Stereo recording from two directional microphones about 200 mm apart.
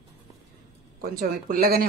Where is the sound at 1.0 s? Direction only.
50° right (ahead or behind).